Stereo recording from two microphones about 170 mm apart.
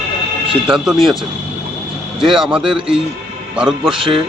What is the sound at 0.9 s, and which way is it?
Speech, centre (ahead or behind).